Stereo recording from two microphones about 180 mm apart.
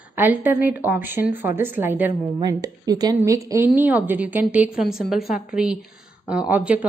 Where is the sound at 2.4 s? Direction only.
20° right (ahead or behind).